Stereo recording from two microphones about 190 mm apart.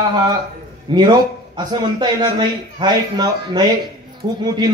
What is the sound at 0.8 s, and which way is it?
A man's voice, 25° right (ahead or behind).